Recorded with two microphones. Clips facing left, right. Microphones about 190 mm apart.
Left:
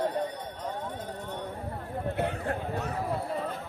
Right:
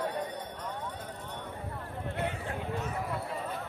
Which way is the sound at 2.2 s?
65° left (ahead or behind).